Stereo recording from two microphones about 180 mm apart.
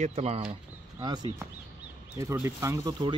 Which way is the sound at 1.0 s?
25° right (ahead or behind).